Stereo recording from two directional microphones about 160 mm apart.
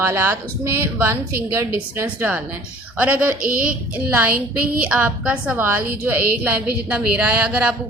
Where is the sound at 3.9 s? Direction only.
10° right (ahead or behind).